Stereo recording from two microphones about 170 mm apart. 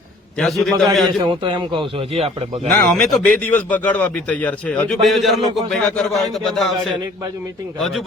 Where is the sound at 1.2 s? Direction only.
30° right (ahead or behind).